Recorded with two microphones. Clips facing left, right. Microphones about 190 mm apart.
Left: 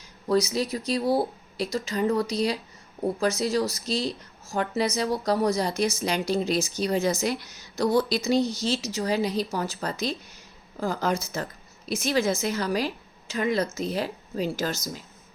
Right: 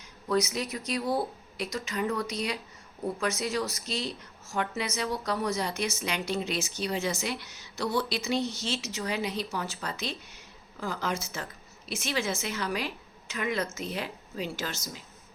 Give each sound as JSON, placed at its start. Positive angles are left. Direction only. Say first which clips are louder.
{"t": 0.3, "sound": "speech", "louder": "left 5 dB", "side_deg": 35}